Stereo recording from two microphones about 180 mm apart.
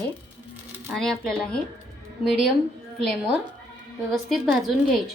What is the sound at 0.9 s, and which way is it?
Speech, centre (ahead or behind).